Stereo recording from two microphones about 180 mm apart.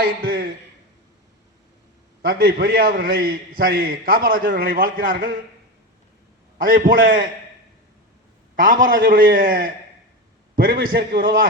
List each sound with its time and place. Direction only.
0.0 s a man's voice: 55° right (ahead or behind)
2.2 s a man's voice: 55° right (ahead or behind)
6.6 s a man's voice: 50° right (ahead or behind)
8.5 s a man's voice: 50° right (ahead or behind)